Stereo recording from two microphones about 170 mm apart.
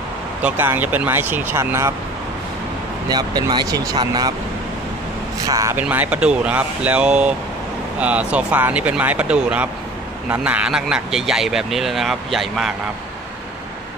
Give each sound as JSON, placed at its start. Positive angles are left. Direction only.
{"t": 0.4, "sound": "speech", "side_deg": -10}
{"t": 3.1, "sound": "speech", "side_deg": -25}
{"t": 5.5, "sound": "speech", "side_deg": -20}